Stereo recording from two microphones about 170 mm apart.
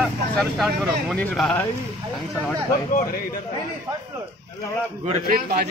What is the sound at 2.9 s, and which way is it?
Speech, 50° left (ahead or behind).